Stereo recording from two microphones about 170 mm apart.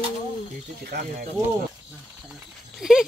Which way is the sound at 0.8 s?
60° right (ahead or behind).